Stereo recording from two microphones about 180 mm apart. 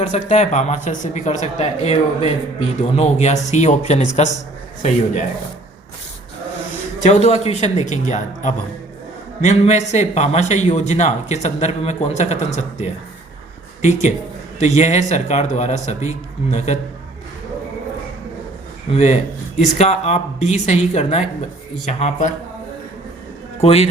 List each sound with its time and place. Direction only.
0.0 s speech: 40° left (ahead or behind)
7.0 s speech: 40° left (ahead or behind)
14.8 s speech: 40° left (ahead or behind)
18.9 s a man's voice: 40° left (ahead or behind)
23.6 s speech: 35° left (ahead or behind)